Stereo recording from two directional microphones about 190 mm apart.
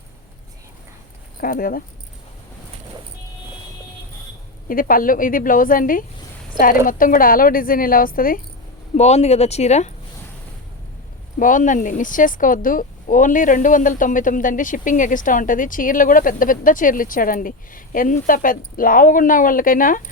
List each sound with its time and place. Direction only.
1.4 s speech: 50° left (ahead or behind)
4.7 s speech: 50° left (ahead or behind)
9.0 s speech: 35° left (ahead or behind)
11.3 s speech: 45° left (ahead or behind)